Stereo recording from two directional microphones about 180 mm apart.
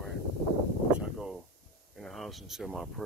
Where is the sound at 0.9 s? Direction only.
5° right (ahead or behind).